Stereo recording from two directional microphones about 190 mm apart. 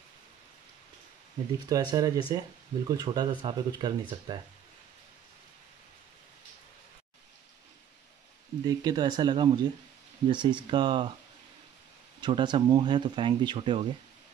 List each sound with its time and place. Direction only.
1.7 s speech: 20° right (ahead or behind)
8.6 s speech: 20° right (ahead or behind)
12.2 s speech: 25° right (ahead or behind)